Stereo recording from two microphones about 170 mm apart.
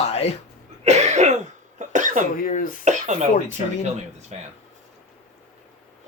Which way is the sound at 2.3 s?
50° left (ahead or behind).